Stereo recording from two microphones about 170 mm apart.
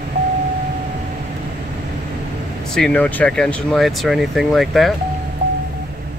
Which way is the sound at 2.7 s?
5° left (ahead or behind).